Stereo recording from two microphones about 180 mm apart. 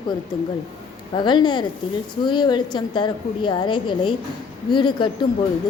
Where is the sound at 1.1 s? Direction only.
25° left (ahead or behind).